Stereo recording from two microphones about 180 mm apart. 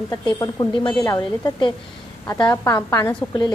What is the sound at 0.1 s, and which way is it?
A woman's voice, 20° left (ahead or behind).